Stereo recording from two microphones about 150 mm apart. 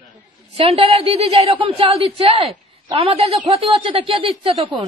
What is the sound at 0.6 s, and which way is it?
A woman's voice, 35° right (ahead or behind).